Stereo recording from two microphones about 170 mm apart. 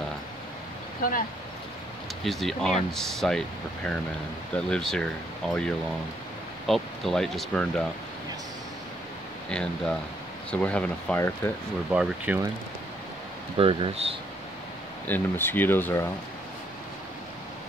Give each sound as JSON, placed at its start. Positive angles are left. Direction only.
{"t": 2.2, "sound": "speech", "side_deg": 0}
{"t": 9.5, "sound": "speech", "side_deg": 5}
{"t": 11.9, "sound": "speech", "side_deg": -5}
{"t": 13.6, "sound": "speech", "side_deg": -30}
{"t": 15.0, "sound": "speech", "side_deg": 10}